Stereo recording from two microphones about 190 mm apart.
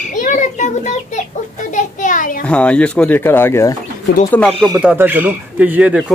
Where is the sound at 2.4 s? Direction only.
5° left (ahead or behind).